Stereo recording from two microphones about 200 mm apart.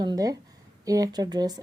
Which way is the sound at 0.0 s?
20° right (ahead or behind).